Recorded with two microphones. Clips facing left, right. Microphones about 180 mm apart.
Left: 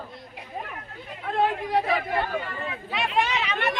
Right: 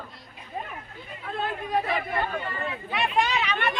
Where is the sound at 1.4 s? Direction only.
90° left.